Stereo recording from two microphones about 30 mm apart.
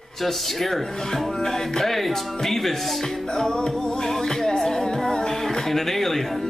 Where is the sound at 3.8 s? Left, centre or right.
Left; by 6.5 s centre.